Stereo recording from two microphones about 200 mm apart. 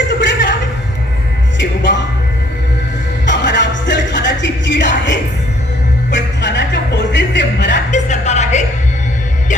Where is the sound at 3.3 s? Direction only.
65° left (ahead or behind).